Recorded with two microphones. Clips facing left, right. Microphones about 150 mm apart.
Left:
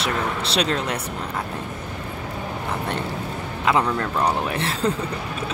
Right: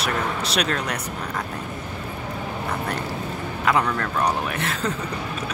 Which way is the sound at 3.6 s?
25° left (ahead or behind).